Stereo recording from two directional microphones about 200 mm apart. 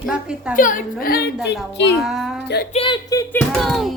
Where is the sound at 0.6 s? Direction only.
40° left (ahead or behind).